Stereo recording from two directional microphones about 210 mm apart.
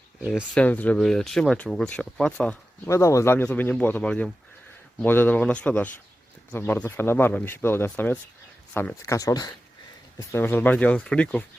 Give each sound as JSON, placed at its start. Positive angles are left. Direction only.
{"t": 0.2, "sound": "speech", "side_deg": -5}
{"t": 0.5, "sound": "speech", "side_deg": 5}